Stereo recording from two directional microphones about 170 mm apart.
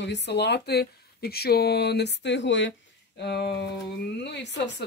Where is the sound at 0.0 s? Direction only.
90° left.